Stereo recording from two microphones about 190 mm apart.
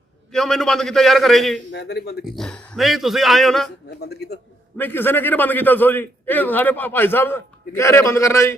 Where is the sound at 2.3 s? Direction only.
Centre (ahead or behind).